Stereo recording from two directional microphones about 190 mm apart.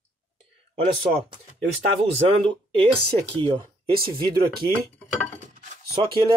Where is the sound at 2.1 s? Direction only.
30° right (ahead or behind).